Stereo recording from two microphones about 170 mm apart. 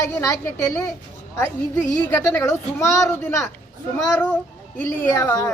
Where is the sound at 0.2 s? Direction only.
15° left (ahead or behind).